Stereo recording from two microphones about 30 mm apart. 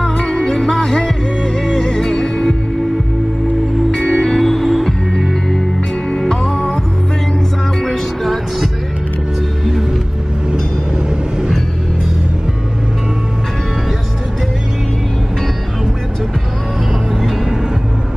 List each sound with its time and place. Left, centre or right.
0.2 s music: left
0.6 s music: left
4.1 s music: centre
6.0 s music: left
7.8 s music: centre